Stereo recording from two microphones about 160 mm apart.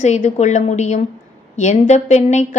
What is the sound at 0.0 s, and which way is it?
A woman's voice, 45° left (ahead or behind).